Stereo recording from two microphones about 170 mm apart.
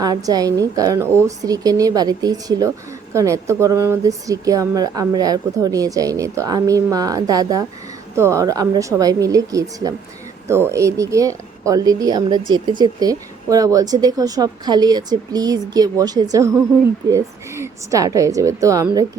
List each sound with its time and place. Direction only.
0.0 s a woman's voice: 20° right (ahead or behind)